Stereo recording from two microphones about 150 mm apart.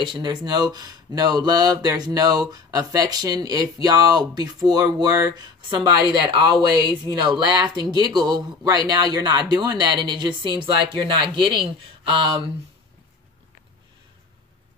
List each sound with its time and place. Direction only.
0.0 s speech: 30° right (ahead or behind)